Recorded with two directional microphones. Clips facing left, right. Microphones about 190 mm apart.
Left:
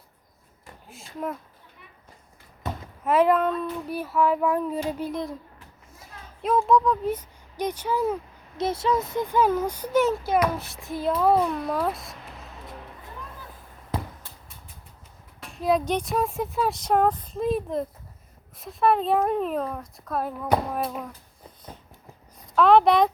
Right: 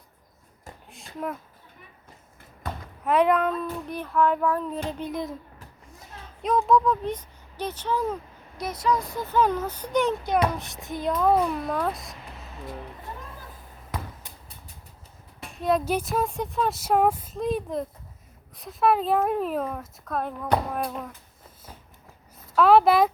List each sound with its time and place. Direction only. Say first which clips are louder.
0.9 s a sound: left 1 dB; centre (ahead or behind)
3.0 s speech: left 1 dB; centre (ahead or behind)
6.4 s speech: left 1 dB; centre (ahead or behind)
8.5 s a child's voice: left 2 dB; 25° left (ahead or behind); by 12.7 s centre (ahead or behind)
13.9 s a sound: left 4 dB; 30° left (ahead or behind)
15.6 s speech: left 1 dB; 5° right (ahead or behind)
22.5 s speech: even; 5° right (ahead or behind)